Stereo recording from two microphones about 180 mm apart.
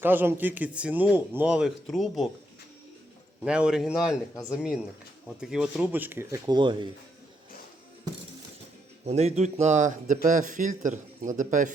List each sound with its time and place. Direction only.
0.0 s a man's voice: 10° right (ahead or behind)
3.4 s a man's voice: 5° right (ahead or behind)
5.4 s a man's voice: 5° right (ahead or behind); by 6.8 s 25° right (ahead or behind)
9.0 s a man's voice: 35° right (ahead or behind)